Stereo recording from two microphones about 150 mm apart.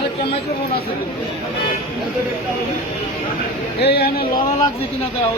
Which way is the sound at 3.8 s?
90° left.